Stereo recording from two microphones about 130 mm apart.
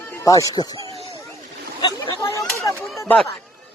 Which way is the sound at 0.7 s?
40° right (ahead or behind).